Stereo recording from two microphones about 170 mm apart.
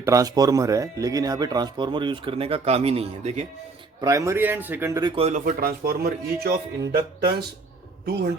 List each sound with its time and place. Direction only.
0.0 s speech: 20° right (ahead or behind); by 3.4 s 35° right (ahead or behind)
4.0 s speech: 20° right (ahead or behind)
4.9 s speech: 25° right (ahead or behind)
5.2 s speech: 45° right (ahead or behind); by 6.6 s 65° right (ahead or behind)
8.0 s speech: 70° right (ahead or behind)